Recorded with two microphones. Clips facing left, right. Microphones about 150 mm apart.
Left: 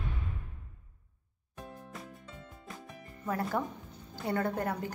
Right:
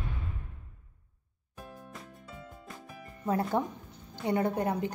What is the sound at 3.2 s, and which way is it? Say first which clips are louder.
Music: right 4 dB; 25° right (ahead or behind).